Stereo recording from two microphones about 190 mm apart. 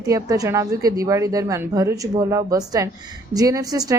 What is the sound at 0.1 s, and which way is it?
A woman's voice, 20° right (ahead or behind).